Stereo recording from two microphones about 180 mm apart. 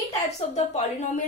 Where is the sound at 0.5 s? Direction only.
40° left (ahead or behind).